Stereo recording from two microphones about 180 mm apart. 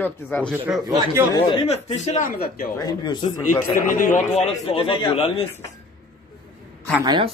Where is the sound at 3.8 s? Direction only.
50° left (ahead or behind).